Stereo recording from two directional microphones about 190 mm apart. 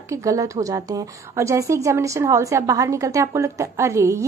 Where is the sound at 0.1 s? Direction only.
15° right (ahead or behind).